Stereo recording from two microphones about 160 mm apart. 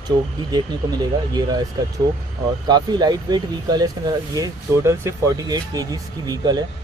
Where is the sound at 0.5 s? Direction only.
25° right (ahead or behind).